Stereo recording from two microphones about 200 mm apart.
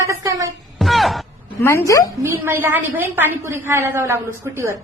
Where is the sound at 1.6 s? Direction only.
15° left (ahead or behind).